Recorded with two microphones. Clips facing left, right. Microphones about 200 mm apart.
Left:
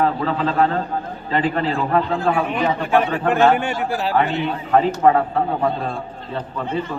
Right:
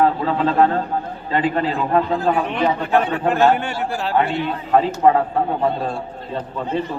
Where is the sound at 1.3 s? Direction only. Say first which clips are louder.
Right 1 dB; 15° right (ahead or behind).